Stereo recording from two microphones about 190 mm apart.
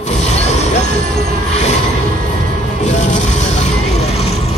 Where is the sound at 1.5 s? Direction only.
35° left (ahead or behind).